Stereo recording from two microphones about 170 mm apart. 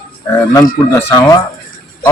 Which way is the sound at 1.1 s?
25° left (ahead or behind).